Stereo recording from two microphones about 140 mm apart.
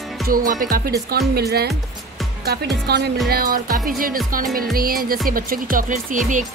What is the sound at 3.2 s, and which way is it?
Speech, 90° right.